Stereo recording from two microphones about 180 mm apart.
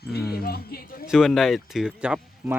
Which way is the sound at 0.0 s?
60° left (ahead or behind).